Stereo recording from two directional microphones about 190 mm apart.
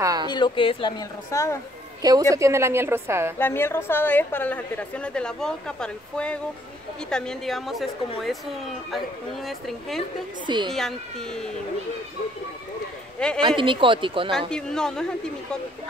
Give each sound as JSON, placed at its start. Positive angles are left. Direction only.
{"t": 0.0, "sound": "a sound", "side_deg": -20}
{"t": 0.3, "sound": "a woman's voice", "side_deg": 25}
{"t": 2.0, "sound": "a woman's voice", "side_deg": -20}
{"t": 3.3, "sound": "a woman's voice", "side_deg": 10}
{"t": 10.4, "sound": "speech", "side_deg": -25}
{"t": 10.7, "sound": "a woman's voice", "side_deg": 0}
{"t": 13.2, "sound": "a woman's voice", "side_deg": 5}
{"t": 13.6, "sound": "speech", "side_deg": -25}
{"t": 14.5, "sound": "a woman's voice", "side_deg": 5}